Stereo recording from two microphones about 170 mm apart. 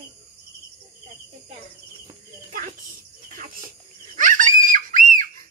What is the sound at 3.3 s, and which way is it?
Cricket, 55° right (ahead or behind).